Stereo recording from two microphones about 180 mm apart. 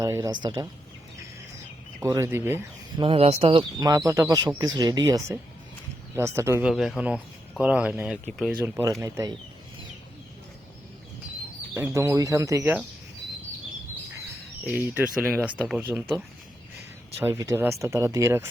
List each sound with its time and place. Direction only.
0.0 s speech: 15° right (ahead or behind)
2.0 s speech: 15° right (ahead or behind)
3.0 s speech: 30° right (ahead or behind); by 6.7 s 15° right (ahead or behind)
6.7 s speech: centre (ahead or behind)
8.6 s speech: 15° right (ahead or behind)
11.7 s speech: 15° right (ahead or behind)
14.7 s speech: 10° right (ahead or behind)
17.2 s speech: 15° right (ahead or behind)